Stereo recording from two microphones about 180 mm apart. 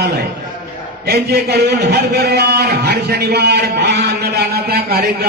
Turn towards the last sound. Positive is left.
turn(degrees=-60)  # may be behind; listen again after turning